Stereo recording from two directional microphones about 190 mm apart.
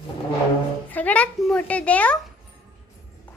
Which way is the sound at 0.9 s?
10° left (ahead or behind).